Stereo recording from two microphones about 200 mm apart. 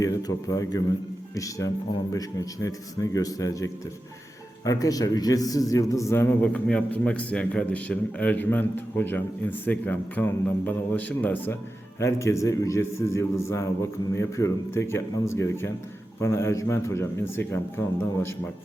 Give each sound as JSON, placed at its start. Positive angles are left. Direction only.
{"t": 0.0, "sound": "a man's voice", "side_deg": 20}